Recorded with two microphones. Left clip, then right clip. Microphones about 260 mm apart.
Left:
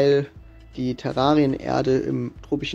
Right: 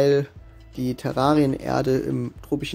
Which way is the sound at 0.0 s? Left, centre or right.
Right.